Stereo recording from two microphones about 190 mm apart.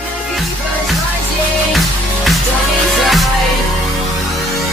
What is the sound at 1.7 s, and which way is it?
Music, centre (ahead or behind).